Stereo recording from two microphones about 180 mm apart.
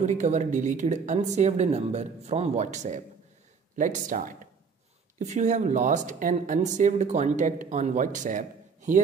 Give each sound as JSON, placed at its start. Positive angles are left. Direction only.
{"t": 0.0, "sound": "speech", "side_deg": -40}